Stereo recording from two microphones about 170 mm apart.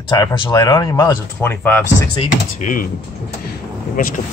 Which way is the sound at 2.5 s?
55° left (ahead or behind).